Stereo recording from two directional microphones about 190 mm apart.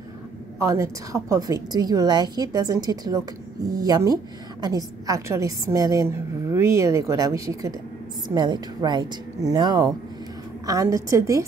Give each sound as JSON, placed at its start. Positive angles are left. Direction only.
{"t": 0.6, "sound": "a woman's voice", "side_deg": -15}